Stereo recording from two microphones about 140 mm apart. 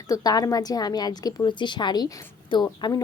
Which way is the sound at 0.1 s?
25° left (ahead or behind).